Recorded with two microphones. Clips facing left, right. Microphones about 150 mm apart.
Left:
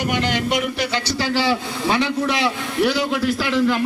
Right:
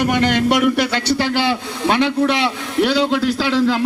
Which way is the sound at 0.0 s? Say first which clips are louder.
Right 5 dB; 55° right (ahead or behind).